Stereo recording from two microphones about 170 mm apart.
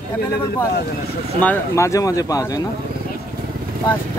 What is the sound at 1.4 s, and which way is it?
Speech, 15° left (ahead or behind).